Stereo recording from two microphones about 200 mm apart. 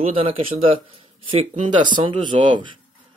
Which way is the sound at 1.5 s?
40° right (ahead or behind).